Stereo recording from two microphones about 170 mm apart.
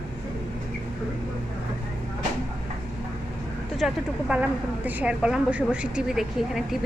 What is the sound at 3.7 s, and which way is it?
A woman's voice, 5° right (ahead or behind).